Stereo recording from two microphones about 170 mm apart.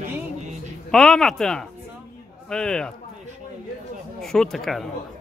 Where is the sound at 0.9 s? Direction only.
5° left (ahead or behind).